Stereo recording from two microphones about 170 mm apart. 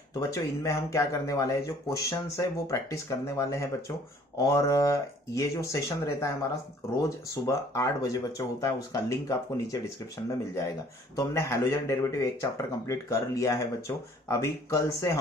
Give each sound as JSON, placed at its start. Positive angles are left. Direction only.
{"t": 0.1, "sound": "speech", "side_deg": 20}